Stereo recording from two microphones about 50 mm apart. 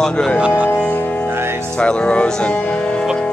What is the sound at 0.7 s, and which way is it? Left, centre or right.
Music, left.